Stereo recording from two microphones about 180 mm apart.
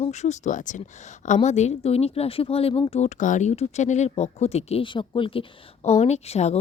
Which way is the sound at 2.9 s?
40° left (ahead or behind).